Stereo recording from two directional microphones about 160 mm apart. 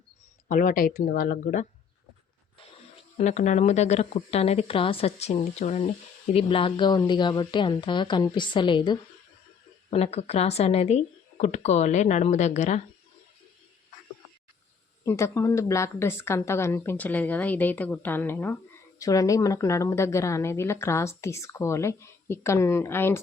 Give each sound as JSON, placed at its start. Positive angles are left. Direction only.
{"t": 0.4, "sound": "speech", "side_deg": 55}
{"t": 3.2, "sound": "a woman's voice", "side_deg": 45}
{"t": 9.9, "sound": "speech", "side_deg": 40}
{"t": 15.0, "sound": "a woman's voice", "side_deg": 15}